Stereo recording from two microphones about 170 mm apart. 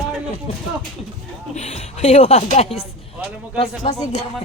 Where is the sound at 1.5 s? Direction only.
40° left (ahead or behind).